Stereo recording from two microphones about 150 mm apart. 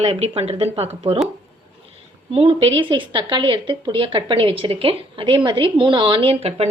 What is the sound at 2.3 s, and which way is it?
A woman's voice, 35° right (ahead or behind).